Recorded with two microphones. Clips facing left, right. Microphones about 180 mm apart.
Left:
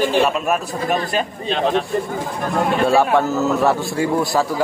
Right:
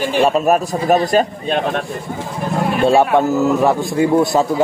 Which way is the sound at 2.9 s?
20° right (ahead or behind).